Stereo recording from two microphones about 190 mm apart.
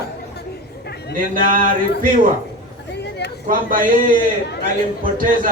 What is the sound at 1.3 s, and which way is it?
A man's voice, 45° right (ahead or behind).